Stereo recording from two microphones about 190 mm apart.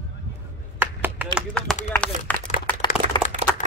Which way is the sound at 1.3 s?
Centre (ahead or behind).